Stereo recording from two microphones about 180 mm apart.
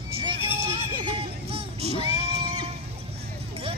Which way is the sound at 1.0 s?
30° right (ahead or behind).